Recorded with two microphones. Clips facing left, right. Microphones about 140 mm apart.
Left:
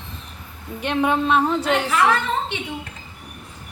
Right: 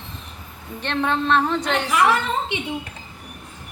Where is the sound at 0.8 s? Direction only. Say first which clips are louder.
Left 2 dB; 10° left (ahead or behind).